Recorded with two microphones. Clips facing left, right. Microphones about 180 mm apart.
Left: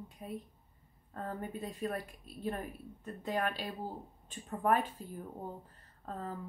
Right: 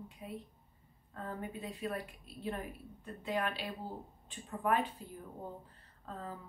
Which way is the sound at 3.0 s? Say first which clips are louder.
Left 1 dB; 45° left (ahead or behind).